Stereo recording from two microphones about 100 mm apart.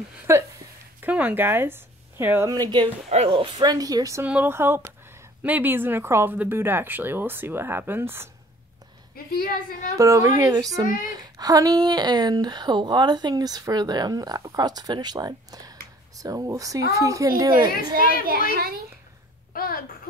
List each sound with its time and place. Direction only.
0.3 s speech: 25° right (ahead or behind)
2.5 s speech: 40° right (ahead or behind)
2.8 s speech: 80° right
3.5 s speech: 40° right (ahead or behind)
4.2 s a woman's voice: 15° right (ahead or behind)
9.9 s speech: 30° right (ahead or behind)